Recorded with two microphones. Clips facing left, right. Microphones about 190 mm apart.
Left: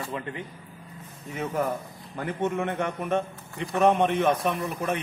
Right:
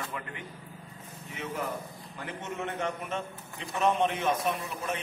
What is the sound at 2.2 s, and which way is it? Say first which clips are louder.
A man's voice: left 9 dB; 55° left (ahead or behind).